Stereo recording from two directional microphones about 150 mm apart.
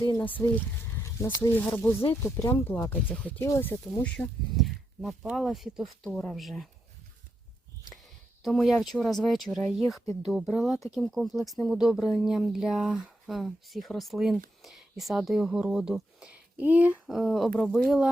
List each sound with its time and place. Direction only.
0.0 s speech: 30° left (ahead or behind)
0.3 s speech: 10° left (ahead or behind)
4.5 s speech: centre (ahead or behind)
8.4 s speech: centre (ahead or behind)